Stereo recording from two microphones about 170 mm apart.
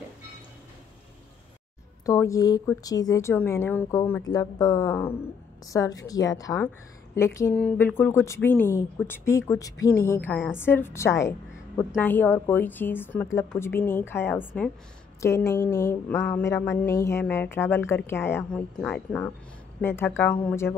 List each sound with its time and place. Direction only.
2.0 s speech: 20° left (ahead or behind)
4.8 s a woman's voice: 10° left (ahead or behind)